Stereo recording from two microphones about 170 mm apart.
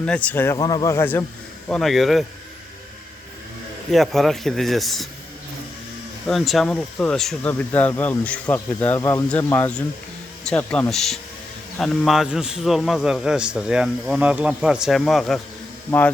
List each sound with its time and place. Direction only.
0.0 s speech: 5° left (ahead or behind)
0.5 s speech: 25° left (ahead or behind)
1.6 s a man's voice: centre (ahead or behind)
3.9 s a man's voice: centre (ahead or behind)
6.2 s a man's voice: centre (ahead or behind)